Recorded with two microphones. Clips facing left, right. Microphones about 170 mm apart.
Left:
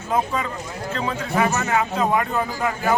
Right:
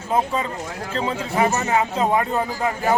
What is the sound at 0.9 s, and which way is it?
Speech, 25° right (ahead or behind).